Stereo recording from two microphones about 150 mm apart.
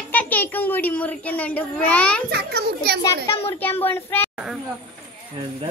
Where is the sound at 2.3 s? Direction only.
90° right.